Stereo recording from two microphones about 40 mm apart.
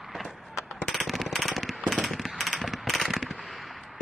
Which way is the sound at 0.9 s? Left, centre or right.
Centre.